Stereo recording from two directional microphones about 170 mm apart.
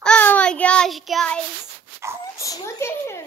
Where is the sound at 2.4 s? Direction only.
15° left (ahead or behind).